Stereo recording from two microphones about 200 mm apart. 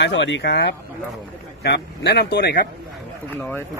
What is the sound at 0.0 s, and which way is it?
Speech, 65° left (ahead or behind).